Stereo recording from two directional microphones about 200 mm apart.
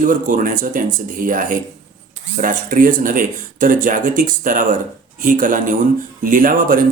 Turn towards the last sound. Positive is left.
turn(degrees=-40)  # may be behind; listen again after turning